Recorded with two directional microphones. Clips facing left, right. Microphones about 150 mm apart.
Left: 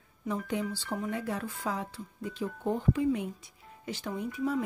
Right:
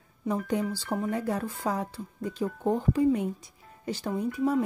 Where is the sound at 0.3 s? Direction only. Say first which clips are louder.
Right 4 dB; 40° right (ahead or behind).